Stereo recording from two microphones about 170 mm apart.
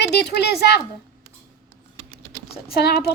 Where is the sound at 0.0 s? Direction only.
85° left.